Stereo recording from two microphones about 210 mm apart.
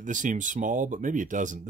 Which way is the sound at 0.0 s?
40° right (ahead or behind).